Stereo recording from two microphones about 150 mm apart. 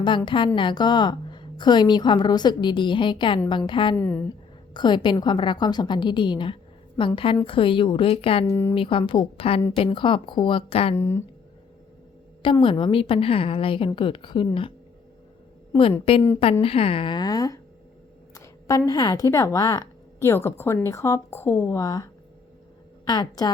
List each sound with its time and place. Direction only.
0.3 s a woman's voice: 35° left (ahead or behind)
3.9 s a woman's voice: 15° left (ahead or behind)
4.7 s a woman's voice: 30° left (ahead or behind)
8.4 s a woman's voice: 15° left (ahead or behind)
8.7 s a woman's voice: 35° left (ahead or behind)
10.9 s a woman's voice: 15° left (ahead or behind)
12.4 s a woman's voice: 35° left (ahead or behind)
16.1 s a woman's voice: 40° left (ahead or behind)
18.9 s speech: 25° left (ahead or behind)